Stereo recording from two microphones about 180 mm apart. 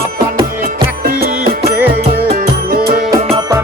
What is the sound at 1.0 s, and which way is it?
Music, 55° right (ahead or behind).